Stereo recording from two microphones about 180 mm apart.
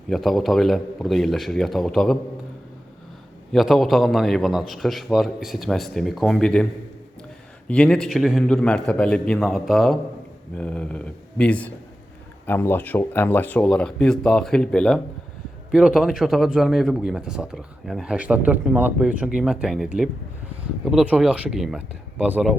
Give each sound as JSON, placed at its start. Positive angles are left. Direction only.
{"t": 0.1, "sound": "a man's voice", "side_deg": 0}
{"t": 3.5, "sound": "a man's voice", "side_deg": 0}
{"t": 7.7, "sound": "a man's voice", "side_deg": 5}